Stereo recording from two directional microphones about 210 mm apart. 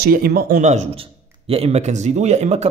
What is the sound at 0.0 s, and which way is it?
Speech, 45° right (ahead or behind).